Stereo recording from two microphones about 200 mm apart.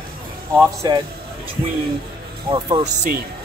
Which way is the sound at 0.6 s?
20° right (ahead or behind).